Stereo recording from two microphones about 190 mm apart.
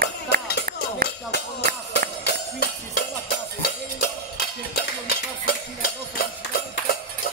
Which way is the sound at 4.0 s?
55° left (ahead or behind).